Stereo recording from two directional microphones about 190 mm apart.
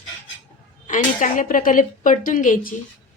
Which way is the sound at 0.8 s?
45° left (ahead or behind).